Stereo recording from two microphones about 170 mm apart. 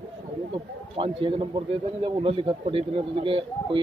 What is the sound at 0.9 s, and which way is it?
A man's voice, 30° right (ahead or behind).